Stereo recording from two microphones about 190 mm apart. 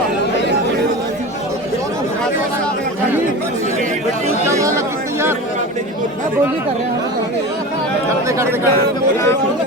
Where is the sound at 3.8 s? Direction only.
40° right (ahead or behind).